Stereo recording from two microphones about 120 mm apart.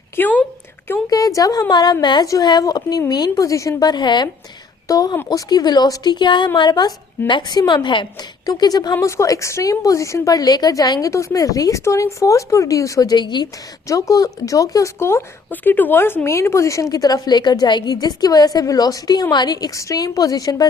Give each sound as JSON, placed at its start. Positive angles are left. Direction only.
{"t": 0.2, "sound": "a woman's voice", "side_deg": 15}
{"t": 1.1, "sound": "a woman's voice", "side_deg": 30}